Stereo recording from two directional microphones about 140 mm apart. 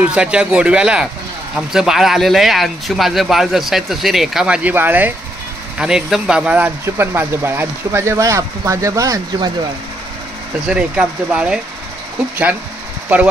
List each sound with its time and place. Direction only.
0.0 s speech: 5° right (ahead or behind); by 9.5 s 25° right (ahead or behind)
10.7 s speech: 5° right (ahead or behind)